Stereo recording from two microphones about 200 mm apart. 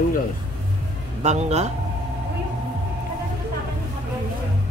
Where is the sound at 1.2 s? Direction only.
35° right (ahead or behind).